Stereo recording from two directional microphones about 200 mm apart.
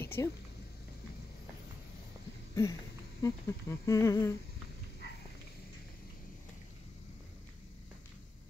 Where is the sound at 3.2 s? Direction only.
15° left (ahead or behind).